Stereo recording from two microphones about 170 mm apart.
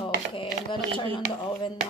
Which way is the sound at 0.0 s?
30° left (ahead or behind).